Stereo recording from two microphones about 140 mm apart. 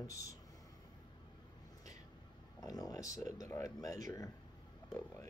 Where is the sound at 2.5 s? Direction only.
25° left (ahead or behind).